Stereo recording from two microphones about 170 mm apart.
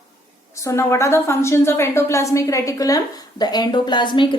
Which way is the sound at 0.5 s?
15° left (ahead or behind).